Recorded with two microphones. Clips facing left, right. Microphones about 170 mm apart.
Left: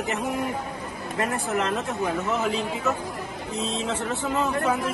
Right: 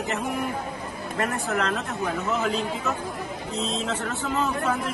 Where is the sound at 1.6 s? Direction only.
10° left (ahead or behind).